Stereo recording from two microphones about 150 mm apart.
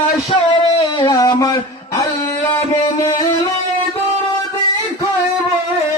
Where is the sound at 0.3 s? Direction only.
40° left (ahead or behind).